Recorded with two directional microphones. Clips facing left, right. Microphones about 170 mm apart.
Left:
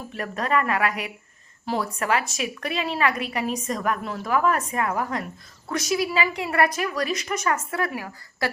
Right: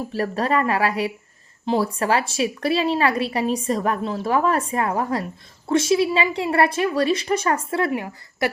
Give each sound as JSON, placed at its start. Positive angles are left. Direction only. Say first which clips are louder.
{"t": 0.1, "sound": "a woman's voice", "louder": "right 2 dB", "side_deg": -30}